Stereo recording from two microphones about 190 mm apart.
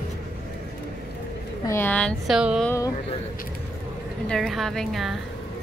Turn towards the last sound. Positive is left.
turn(degrees=0)  # may be behind; listen again after turning